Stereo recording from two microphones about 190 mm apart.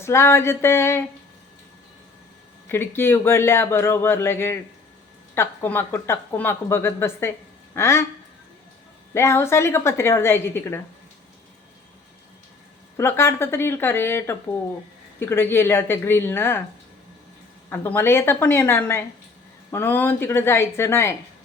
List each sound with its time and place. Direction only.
0.0 s speech: 15° left (ahead or behind)
2.6 s speech: 10° left (ahead or behind)
9.1 s speech: 15° left (ahead or behind)
13.0 s speech: 15° left (ahead or behind)
17.7 s speech: 10° left (ahead or behind)